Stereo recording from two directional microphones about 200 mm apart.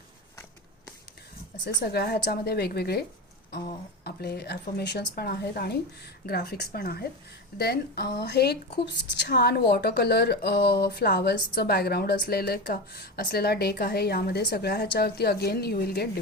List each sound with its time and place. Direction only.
1.8 s a woman's voice: 50° left (ahead or behind)
4.0 s a woman's voice: 55° left (ahead or behind)